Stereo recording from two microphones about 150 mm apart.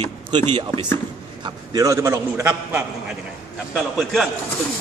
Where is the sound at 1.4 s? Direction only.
25° right (ahead or behind).